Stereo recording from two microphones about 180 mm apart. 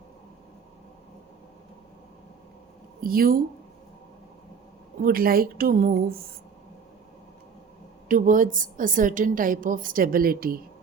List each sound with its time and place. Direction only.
3.0 s a woman's voice: 55° right (ahead or behind)
5.0 s a woman's voice: 55° right (ahead or behind)
8.0 s a woman's voice: 45° right (ahead or behind)